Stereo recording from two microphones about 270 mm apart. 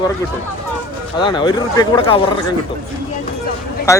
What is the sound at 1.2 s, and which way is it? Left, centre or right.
Speech, centre.